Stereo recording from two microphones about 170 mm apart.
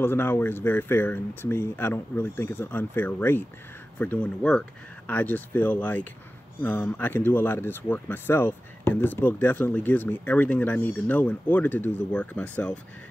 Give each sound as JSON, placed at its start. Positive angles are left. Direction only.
{"t": 0.0, "sound": "speech", "side_deg": 15}